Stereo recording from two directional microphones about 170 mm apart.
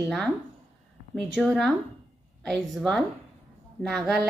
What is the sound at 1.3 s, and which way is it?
A woman's voice, centre (ahead or behind).